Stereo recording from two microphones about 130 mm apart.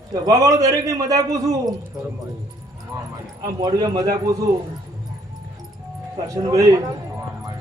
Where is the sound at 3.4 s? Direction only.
30° right (ahead or behind).